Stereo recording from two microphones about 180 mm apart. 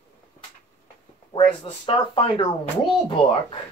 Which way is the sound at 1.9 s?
25° left (ahead or behind).